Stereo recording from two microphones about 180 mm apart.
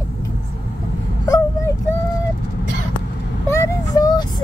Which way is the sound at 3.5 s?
20° left (ahead or behind).